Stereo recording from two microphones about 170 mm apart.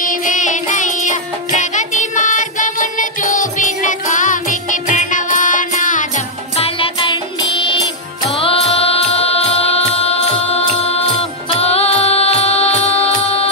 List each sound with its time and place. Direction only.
0.0 s music: 50° left (ahead or behind)
6.5 s music: 35° left (ahead or behind)